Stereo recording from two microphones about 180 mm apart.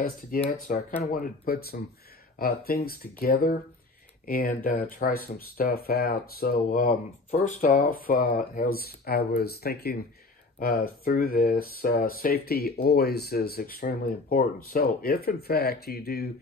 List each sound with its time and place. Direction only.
0.5 s speech: 50° left (ahead or behind)